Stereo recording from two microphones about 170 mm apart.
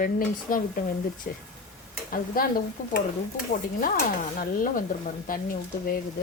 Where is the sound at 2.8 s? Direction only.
50° left (ahead or behind).